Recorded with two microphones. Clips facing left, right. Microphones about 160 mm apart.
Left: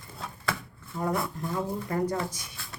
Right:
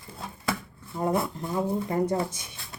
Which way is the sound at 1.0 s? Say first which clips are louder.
Right 3 dB; 20° right (ahead or behind).